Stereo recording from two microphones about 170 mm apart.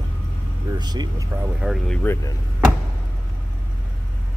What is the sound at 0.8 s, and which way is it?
Speech, 25° right (ahead or behind).